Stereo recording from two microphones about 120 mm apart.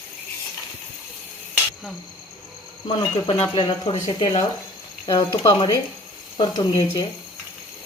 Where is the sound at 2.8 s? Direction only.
45° left (ahead or behind).